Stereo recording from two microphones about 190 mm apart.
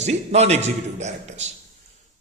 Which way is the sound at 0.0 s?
35° right (ahead or behind).